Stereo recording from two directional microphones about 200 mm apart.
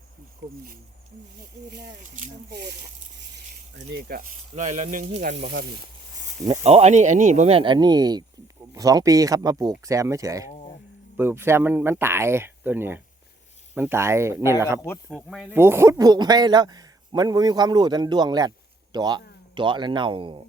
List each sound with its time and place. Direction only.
0.4 s speech: 65° right (ahead or behind)
1.4 s speech: 50° right (ahead or behind)
5.3 s speech: 65° right (ahead or behind)
6.4 s speech: 20° right (ahead or behind)
6.7 s speech: 35° right (ahead or behind); by 10.5 s 15° right (ahead or behind)
10.5 s a sound: 30° left (ahead or behind)
11.2 s speech: 10° right (ahead or behind)
14.8 s speech: 15° left (ahead or behind)
15.1 s a man's voice: 5° right (ahead or behind); by 20.4 s 25° right (ahead or behind)